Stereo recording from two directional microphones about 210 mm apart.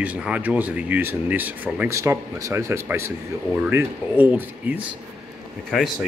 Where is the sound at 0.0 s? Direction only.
5° right (ahead or behind).